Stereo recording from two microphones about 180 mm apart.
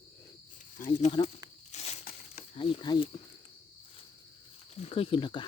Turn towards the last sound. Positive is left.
turn(degrees=25)  # may be behind; listen again after turning